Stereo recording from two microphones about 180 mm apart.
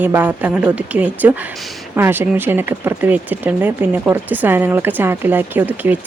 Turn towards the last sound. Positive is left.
turn(degrees=-10)  # may be behind; listen again after turning